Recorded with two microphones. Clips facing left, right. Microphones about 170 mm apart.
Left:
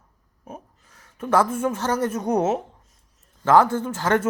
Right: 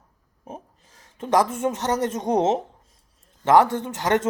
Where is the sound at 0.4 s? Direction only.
25° right (ahead or behind).